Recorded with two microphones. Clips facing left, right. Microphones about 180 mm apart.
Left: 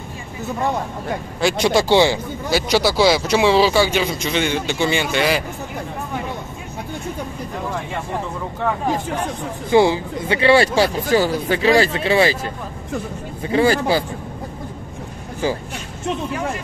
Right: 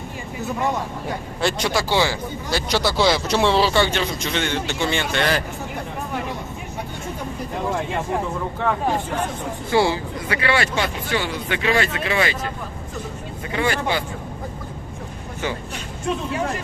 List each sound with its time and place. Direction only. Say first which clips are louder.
1.6 s speech: left 8 dB; 20° left (ahead or behind)
2.5 s speech: left 4 dB; 10° left (ahead or behind)
9.7 s speech: left 5 dB; 20° left (ahead or behind)
13.5 s speech: left 6 dB; 35° left (ahead or behind)
15.4 s speech: left 5 dB; 35° left (ahead or behind)